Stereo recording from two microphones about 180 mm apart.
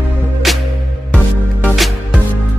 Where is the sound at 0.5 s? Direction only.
Centre (ahead or behind).